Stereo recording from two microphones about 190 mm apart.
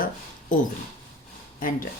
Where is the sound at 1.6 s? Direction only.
45° left (ahead or behind).